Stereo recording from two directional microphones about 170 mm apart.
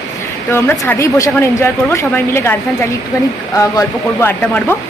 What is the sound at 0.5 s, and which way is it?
Speech, 15° left (ahead or behind).